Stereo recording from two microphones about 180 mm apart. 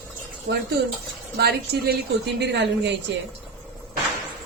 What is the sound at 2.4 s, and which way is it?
Speech, 75° right (ahead or behind).